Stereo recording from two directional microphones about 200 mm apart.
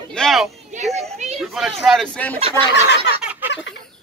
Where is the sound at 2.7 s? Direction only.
60° left (ahead or behind).